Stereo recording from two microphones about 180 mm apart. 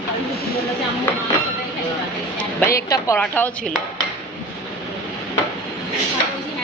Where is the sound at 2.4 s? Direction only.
10° left (ahead or behind).